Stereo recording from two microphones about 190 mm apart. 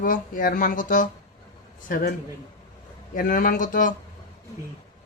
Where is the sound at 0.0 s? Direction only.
45° left (ahead or behind).